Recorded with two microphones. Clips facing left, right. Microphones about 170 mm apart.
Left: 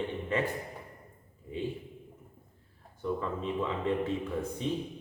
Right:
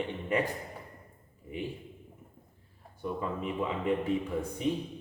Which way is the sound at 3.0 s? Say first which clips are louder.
Left 1 dB; 15° right (ahead or behind).